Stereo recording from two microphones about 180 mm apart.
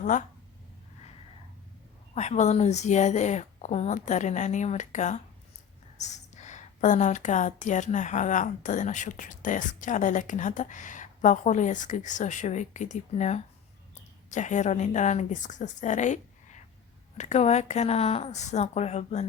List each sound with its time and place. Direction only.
0.0 s speech: 45° left (ahead or behind)
2.1 s a woman's voice: 40° left (ahead or behind)